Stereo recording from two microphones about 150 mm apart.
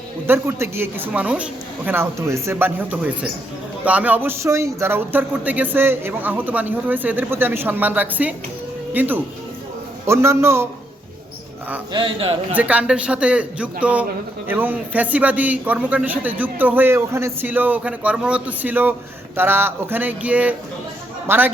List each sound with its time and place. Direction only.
0.3 s a man's voice: 15° right (ahead or behind)
11.9 s speech: 35° right (ahead or behind)
12.5 s a man's voice: 10° right (ahead or behind)